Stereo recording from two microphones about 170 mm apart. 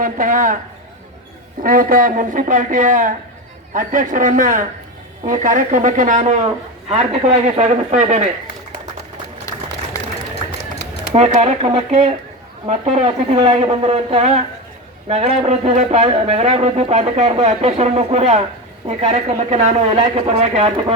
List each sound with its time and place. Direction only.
0.0 s speech: 50° right (ahead or behind)
1.6 s speech: 55° right (ahead or behind)
9.5 s a sound: 20° left (ahead or behind)
11.1 s speech: 40° right (ahead or behind)